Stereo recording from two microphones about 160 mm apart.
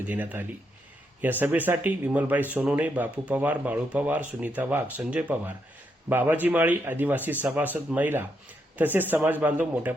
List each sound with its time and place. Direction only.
0.1 s speech: 10° right (ahead or behind)